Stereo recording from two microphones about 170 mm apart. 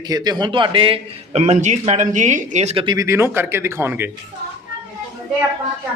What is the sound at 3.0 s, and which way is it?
Speech, 15° right (ahead or behind).